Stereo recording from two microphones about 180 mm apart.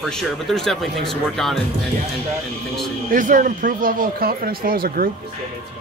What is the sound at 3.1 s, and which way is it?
Speech, 50° right (ahead or behind).